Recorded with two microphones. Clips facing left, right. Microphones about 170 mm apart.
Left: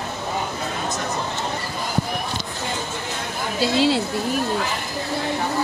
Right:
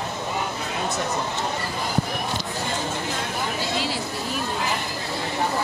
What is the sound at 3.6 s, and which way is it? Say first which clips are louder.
Speech: left 14 dB; 75° left (ahead or behind).